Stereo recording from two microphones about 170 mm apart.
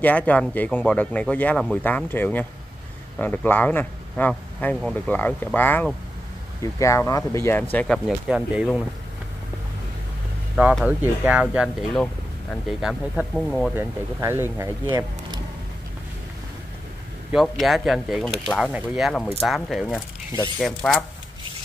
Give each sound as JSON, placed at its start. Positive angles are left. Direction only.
{"t": 0.0, "sound": "speech", "side_deg": 10}
{"t": 7.7, "sound": "speech", "side_deg": 5}
{"t": 8.3, "sound": "speech", "side_deg": -5}
{"t": 10.5, "sound": "speech", "side_deg": 0}
{"t": 13.7, "sound": "speech", "side_deg": -15}
{"t": 17.3, "sound": "speech", "side_deg": 0}